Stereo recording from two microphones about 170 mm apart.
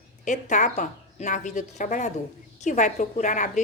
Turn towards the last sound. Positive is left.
turn(degrees=45)  # may be behind; listen again after turning